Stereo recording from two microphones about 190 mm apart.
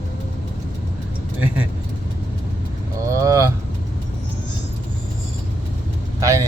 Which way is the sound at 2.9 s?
15° right (ahead or behind).